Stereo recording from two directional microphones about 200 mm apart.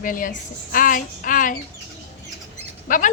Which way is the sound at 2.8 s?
40° left (ahead or behind).